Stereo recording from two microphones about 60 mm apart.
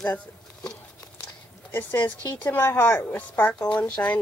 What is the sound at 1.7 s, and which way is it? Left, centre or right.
Speech, left.